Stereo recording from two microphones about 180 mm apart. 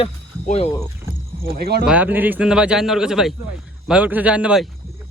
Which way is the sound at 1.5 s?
60° right (ahead or behind).